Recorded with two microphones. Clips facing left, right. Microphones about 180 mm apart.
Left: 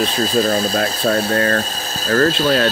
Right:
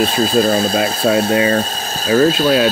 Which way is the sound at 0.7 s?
5° right (ahead or behind).